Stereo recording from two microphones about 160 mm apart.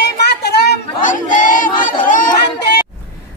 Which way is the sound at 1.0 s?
55° left (ahead or behind).